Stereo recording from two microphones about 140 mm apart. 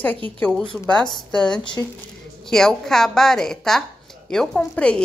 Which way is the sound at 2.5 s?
5° left (ahead or behind).